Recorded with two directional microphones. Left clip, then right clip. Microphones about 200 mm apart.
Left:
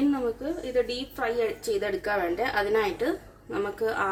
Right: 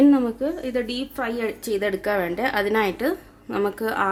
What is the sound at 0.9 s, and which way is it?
A woman's voice, 65° right (ahead or behind).